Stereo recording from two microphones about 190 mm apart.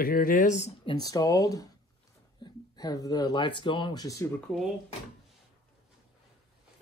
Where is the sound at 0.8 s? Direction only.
20° left (ahead or behind).